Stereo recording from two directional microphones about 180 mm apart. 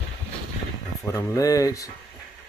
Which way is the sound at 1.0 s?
15° left (ahead or behind).